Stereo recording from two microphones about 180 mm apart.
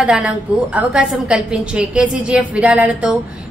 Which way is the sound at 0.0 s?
5° right (ahead or behind).